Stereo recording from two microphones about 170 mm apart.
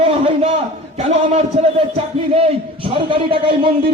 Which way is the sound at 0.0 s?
35° right (ahead or behind).